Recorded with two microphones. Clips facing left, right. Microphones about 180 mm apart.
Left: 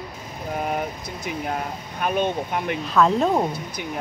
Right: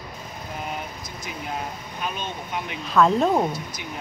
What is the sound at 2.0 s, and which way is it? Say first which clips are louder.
Speech: left 9 dB; 55° left (ahead or behind).